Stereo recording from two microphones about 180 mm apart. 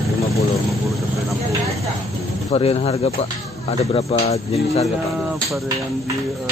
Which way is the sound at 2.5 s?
35° left (ahead or behind).